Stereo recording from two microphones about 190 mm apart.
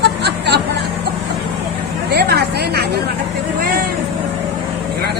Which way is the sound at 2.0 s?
55° right (ahead or behind).